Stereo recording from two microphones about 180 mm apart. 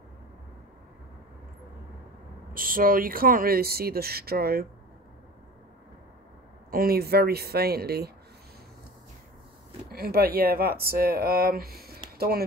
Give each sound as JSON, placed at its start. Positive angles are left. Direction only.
{"t": 2.5, "sound": "speech", "side_deg": -50}
{"t": 6.7, "sound": "speech", "side_deg": -55}
{"t": 9.8, "sound": "speech", "side_deg": -60}